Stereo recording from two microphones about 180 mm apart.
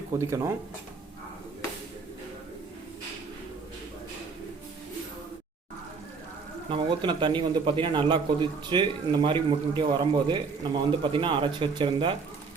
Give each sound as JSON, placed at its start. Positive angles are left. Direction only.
{"t": 0.1, "sound": "speech", "side_deg": -15}
{"t": 6.7, "sound": "speech", "side_deg": -30}